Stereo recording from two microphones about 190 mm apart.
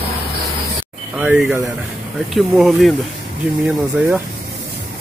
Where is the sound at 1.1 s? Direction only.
5° right (ahead or behind).